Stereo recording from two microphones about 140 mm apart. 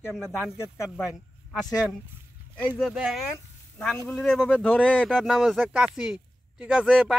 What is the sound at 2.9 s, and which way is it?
Speech, 5° right (ahead or behind).